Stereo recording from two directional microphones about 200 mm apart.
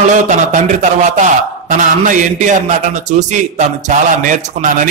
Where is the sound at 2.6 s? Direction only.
35° right (ahead or behind).